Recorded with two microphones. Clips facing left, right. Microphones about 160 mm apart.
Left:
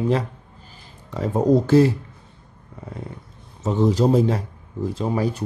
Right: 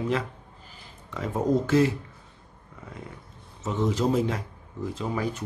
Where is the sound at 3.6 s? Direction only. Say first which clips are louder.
Left 7 dB; 35° left (ahead or behind).